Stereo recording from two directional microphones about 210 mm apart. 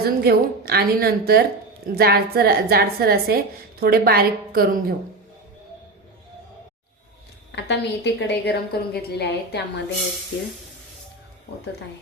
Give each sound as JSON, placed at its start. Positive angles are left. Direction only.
{"t": 0.0, "sound": "a woman's voice", "side_deg": -45}
{"t": 7.5, "sound": "a woman's voice", "side_deg": 55}